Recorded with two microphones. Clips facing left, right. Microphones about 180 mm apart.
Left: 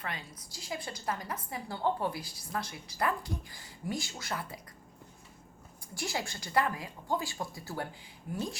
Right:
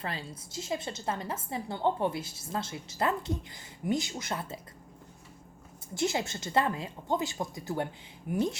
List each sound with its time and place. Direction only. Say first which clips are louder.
0.0 s a woman's voice: right 4 dB; 30° right (ahead or behind)
5.9 s a woman's voice: right 6 dB; 20° right (ahead or behind)